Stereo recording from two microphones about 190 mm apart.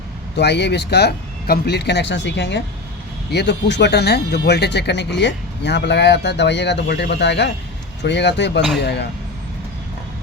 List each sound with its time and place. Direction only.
0.3 s speech: 60° left (ahead or behind)